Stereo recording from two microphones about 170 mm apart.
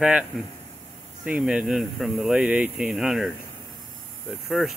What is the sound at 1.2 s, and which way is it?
Speech, 5° right (ahead or behind).